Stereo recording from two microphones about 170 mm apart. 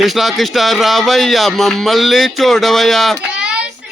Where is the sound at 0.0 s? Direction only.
Centre (ahead or behind).